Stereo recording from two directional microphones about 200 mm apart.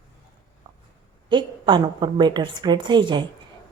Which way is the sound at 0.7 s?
20° right (ahead or behind).